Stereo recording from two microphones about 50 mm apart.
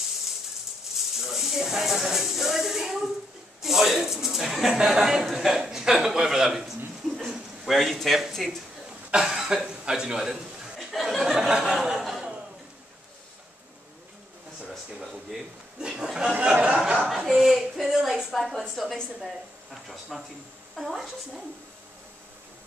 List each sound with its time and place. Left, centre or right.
1.1 s speech: centre
9.1 s speech: centre
10.8 s speech: centre
11.3 s a sound: centre
15.0 s a sound: centre
16.3 s speech: right
17.1 s a sound: centre
18.0 s speech: centre
18.3 s speech: centre